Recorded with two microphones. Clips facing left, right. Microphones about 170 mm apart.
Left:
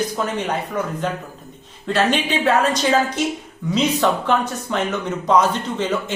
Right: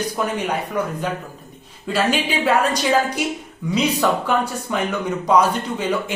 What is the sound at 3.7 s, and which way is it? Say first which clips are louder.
Speech: left 1 dB; 10° right (ahead or behind).